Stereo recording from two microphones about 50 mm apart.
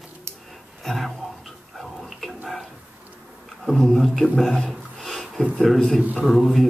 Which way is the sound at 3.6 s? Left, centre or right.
Centre.